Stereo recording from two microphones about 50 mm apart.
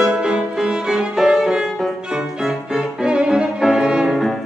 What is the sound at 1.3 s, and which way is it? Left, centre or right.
Music, centre.